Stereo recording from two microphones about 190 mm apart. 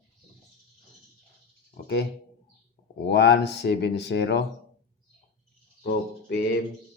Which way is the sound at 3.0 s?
60° left (ahead or behind).